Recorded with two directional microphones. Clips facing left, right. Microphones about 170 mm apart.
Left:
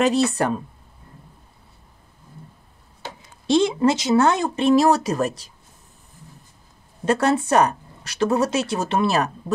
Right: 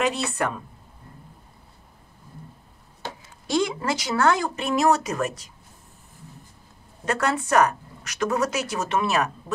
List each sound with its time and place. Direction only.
0.0 s a woman's voice: 35° left (ahead or behind)
3.4 s speech: 25° left (ahead or behind)
7.1 s speech: 30° left (ahead or behind)